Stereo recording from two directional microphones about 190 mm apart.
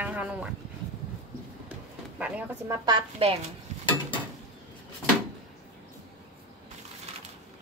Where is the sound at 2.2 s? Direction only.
5° right (ahead or behind); by 3.4 s 25° right (ahead or behind).